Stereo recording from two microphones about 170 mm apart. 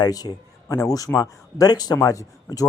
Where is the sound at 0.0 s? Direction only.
25° left (ahead or behind).